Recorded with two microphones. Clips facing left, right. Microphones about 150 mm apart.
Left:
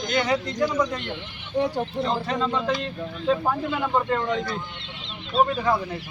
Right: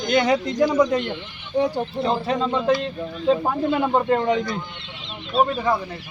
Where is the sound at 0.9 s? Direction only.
10° right (ahead or behind).